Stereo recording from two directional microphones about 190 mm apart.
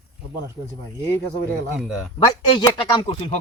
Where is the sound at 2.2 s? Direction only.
25° left (ahead or behind).